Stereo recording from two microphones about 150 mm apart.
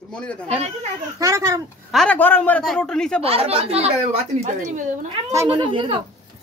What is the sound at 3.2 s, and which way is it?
Speech, 40° right (ahead or behind).